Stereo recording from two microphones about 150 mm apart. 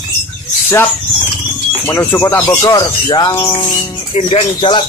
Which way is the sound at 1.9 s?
15° left (ahead or behind).